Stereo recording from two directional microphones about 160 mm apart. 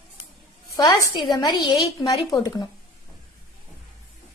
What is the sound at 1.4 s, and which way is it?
A woman's voice, 25° left (ahead or behind).